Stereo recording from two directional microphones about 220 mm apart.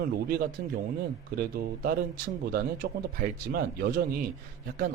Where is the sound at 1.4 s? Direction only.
40° right (ahead or behind).